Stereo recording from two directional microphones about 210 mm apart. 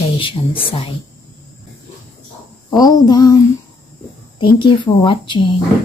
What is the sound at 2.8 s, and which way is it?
Speech, 20° left (ahead or behind).